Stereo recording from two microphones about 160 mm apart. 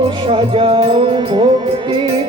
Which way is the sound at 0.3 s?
30° right (ahead or behind).